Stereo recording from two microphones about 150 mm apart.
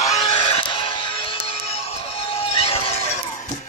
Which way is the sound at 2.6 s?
40° left (ahead or behind).